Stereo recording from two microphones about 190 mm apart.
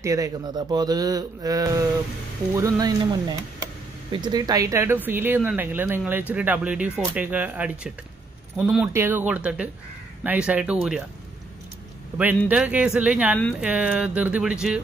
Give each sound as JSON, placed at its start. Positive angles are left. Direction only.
{"t": 0.0, "sound": "speech", "side_deg": -15}
{"t": 12.4, "sound": "speech", "side_deg": -5}